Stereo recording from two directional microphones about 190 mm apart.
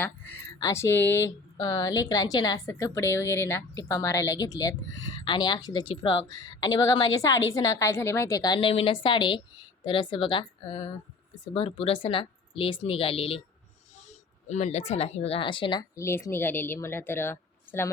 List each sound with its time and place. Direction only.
0.6 s a woman's voice: 15° left (ahead or behind)